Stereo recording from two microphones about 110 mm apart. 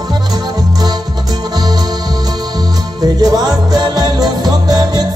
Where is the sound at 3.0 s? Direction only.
35° right (ahead or behind).